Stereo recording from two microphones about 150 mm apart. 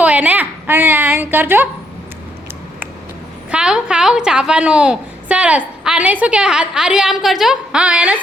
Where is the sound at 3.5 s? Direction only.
5° right (ahead or behind).